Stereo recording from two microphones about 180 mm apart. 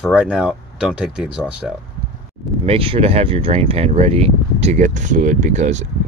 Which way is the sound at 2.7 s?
30° right (ahead or behind).